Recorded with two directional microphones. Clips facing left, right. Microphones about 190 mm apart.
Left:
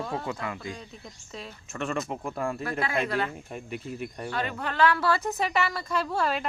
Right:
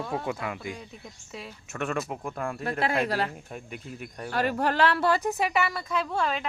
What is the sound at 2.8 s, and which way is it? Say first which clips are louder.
Speech: right 2 dB; 35° right (ahead or behind).